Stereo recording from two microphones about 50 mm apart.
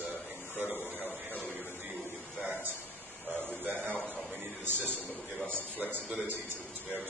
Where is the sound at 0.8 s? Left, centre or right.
Left.